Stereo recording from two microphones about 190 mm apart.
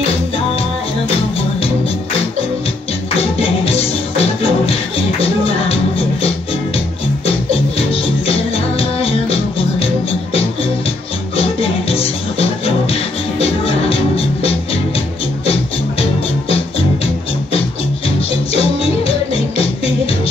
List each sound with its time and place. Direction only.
3.2 s music: 30° left (ahead or behind)
11.3 s music: 30° left (ahead or behind)
18.0 s music: 30° left (ahead or behind)